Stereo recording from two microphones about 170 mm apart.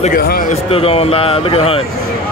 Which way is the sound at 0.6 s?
35° left (ahead or behind).